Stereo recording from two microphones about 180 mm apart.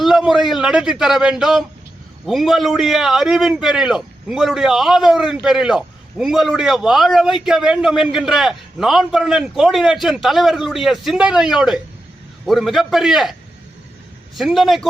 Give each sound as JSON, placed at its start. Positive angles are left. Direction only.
{"t": 0.0, "sound": "a man's voice", "side_deg": 0}
{"t": 14.3, "sound": "a man's voice", "side_deg": 0}